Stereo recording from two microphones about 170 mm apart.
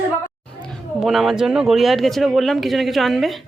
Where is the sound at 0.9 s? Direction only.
Centre (ahead or behind).